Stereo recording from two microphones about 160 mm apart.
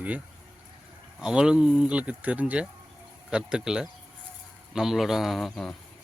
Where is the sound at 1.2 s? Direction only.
5° right (ahead or behind).